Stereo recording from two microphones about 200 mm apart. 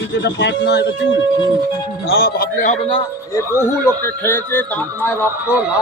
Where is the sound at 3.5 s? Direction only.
15° left (ahead or behind).